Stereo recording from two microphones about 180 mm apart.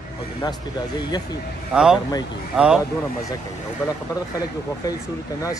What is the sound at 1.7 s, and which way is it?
Speech, 5° right (ahead or behind).